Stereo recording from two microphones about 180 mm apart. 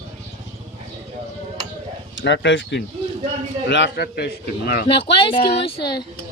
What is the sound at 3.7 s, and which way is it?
A man's voice, 70° left (ahead or behind).